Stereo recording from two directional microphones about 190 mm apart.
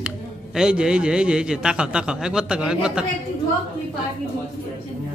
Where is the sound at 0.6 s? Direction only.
5° right (ahead or behind).